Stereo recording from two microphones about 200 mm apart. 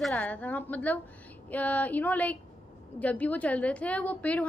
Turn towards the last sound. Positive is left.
turn(degrees=5)  # may be behind; listen again after turning